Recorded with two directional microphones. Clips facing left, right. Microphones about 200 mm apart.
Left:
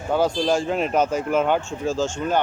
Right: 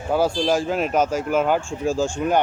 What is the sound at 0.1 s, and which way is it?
Speech, 5° right (ahead or behind).